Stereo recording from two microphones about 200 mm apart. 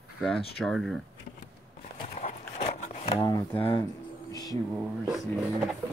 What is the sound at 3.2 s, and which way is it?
Speech, 20° left (ahead or behind).